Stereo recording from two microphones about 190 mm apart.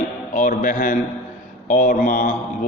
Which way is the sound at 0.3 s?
45° left (ahead or behind).